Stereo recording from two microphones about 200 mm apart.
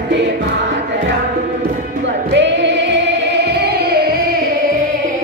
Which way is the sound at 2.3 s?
60° right (ahead or behind).